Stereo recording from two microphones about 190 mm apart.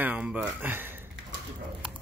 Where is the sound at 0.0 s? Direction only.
5° right (ahead or behind).